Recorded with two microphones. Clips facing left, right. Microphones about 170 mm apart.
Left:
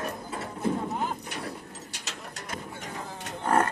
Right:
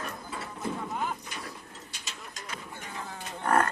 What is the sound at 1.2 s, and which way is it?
Mechanisms, 60° left (ahead or behind).